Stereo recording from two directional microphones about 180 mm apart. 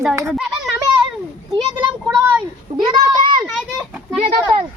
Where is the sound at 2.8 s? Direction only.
25° right (ahead or behind).